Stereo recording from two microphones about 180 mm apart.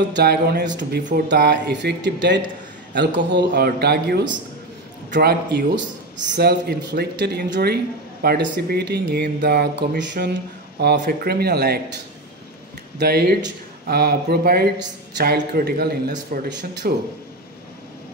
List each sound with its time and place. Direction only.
0.1 s a man's voice: 60° right (ahead or behind)
10.8 s speech: 60° right (ahead or behind)
13.0 s speech: 60° right (ahead or behind)
16.3 s speech: 55° right (ahead or behind)